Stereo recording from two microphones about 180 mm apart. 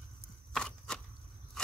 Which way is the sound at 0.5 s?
5° left (ahead or behind).